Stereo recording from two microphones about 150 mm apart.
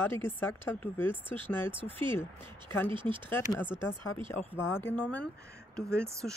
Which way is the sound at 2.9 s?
35° right (ahead or behind).